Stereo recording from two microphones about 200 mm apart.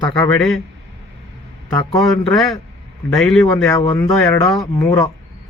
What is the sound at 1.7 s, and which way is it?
Speech, 20° left (ahead or behind).